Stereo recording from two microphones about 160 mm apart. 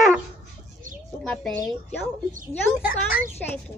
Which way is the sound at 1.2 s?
5° left (ahead or behind).